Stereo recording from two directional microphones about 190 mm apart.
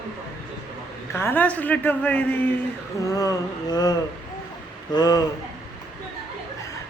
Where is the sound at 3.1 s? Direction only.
20° left (ahead or behind).